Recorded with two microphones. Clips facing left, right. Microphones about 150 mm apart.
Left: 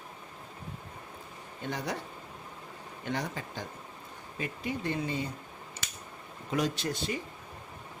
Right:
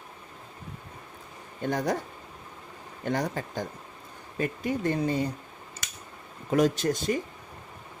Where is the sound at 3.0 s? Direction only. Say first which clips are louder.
Right 6 dB; 45° right (ahead or behind).